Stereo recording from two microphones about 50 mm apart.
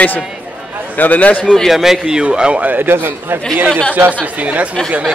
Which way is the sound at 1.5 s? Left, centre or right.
Centre.